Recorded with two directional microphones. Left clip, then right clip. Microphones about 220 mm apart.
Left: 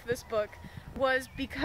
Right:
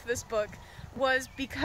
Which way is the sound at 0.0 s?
10° right (ahead or behind).